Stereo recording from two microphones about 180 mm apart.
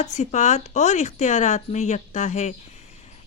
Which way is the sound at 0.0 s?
40° left (ahead or behind).